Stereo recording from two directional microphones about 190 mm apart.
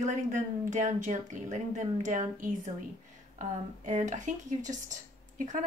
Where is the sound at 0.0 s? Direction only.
40° right (ahead or behind).